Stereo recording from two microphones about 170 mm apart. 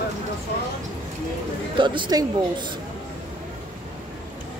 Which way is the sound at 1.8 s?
25° right (ahead or behind).